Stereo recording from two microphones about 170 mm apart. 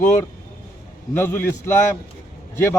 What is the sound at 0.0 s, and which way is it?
A man's voice, 20° left (ahead or behind).